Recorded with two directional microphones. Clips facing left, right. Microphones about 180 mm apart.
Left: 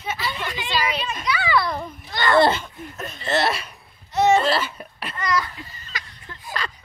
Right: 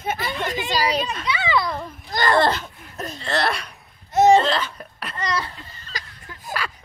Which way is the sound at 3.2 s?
5° left (ahead or behind).